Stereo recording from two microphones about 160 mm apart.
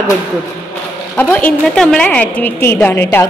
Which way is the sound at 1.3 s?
5° left (ahead or behind).